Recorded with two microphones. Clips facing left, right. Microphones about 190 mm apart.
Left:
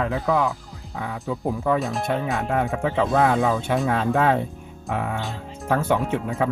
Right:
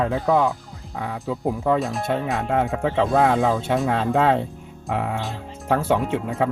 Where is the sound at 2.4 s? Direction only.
20° right (ahead or behind).